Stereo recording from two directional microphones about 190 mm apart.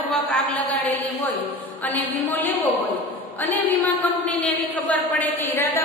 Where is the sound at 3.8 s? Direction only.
10° left (ahead or behind).